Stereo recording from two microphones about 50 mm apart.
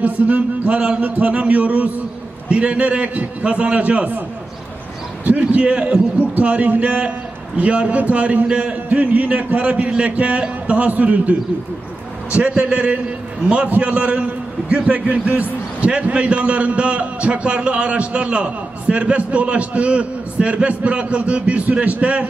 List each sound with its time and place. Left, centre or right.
0.0 s a man's voice: right
5.2 s a man's voice: right
12.4 s a man's voice: right